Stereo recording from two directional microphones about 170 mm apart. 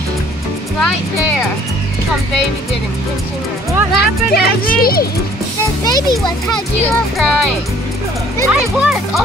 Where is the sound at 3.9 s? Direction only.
70° left (ahead or behind).